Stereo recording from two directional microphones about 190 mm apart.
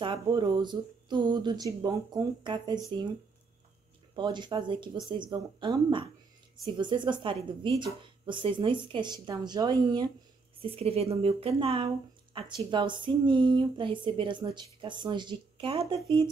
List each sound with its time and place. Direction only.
0.0 s a woman's voice: 25° right (ahead or behind)
4.1 s a woman's voice: 25° right (ahead or behind)